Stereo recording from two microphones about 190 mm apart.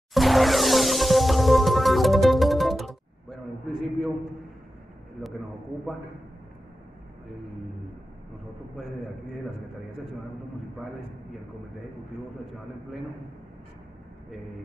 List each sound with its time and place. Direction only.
0.1 s music: centre (ahead or behind)
8.7 s a man's voice: centre (ahead or behind)